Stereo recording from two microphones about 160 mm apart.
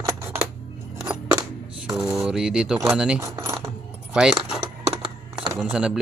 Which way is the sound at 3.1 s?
20° right (ahead or behind).